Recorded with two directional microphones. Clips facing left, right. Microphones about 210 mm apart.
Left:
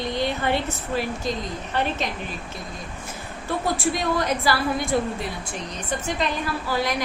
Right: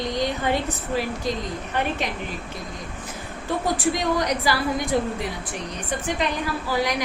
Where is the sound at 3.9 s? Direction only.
15° right (ahead or behind).